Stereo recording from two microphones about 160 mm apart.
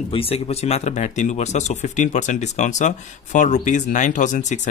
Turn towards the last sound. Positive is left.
turn(degrees=50)  # may be behind; listen again after turning